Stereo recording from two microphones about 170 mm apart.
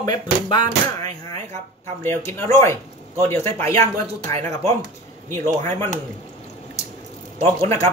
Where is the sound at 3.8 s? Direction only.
40° right (ahead or behind).